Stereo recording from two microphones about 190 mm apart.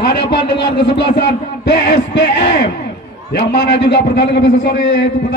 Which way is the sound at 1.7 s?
70° left (ahead or behind).